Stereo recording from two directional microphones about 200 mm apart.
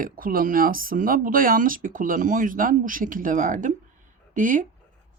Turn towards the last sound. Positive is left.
turn(degrees=-40)  # may be behind; listen again after turning